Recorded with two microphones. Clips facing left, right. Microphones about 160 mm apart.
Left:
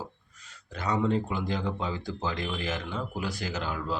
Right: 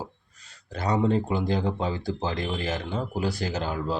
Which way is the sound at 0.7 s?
35° right (ahead or behind).